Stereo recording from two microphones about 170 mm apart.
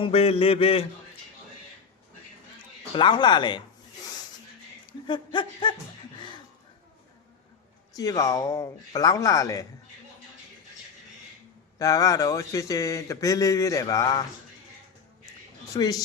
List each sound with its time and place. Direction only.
0.0 s mantra: 35° left (ahead or behind)
2.9 s speech: 30° left (ahead or behind)
4.9 s speech: 25° left (ahead or behind)
6.1 s a sound: 30° left (ahead or behind)
7.9 s speech: 20° left (ahead or behind)
11.8 s speech: 20° left (ahead or behind)
15.3 s a sound: 20° left (ahead or behind)